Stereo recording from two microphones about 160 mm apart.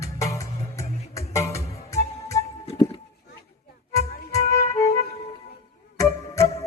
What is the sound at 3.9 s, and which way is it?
Music, 20° left (ahead or behind).